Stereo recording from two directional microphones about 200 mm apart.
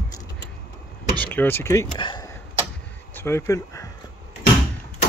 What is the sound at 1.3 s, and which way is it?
Speech, 10° left (ahead or behind).